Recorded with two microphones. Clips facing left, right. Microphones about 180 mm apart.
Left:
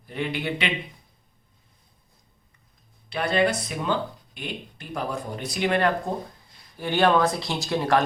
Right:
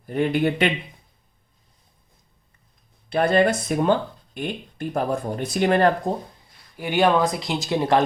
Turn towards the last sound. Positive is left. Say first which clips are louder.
# right 2 dB
turn(degrees=-20)  # may be behind; listen again after turning